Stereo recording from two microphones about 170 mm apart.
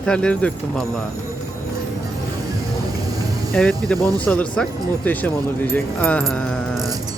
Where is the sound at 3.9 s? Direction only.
20° right (ahead or behind).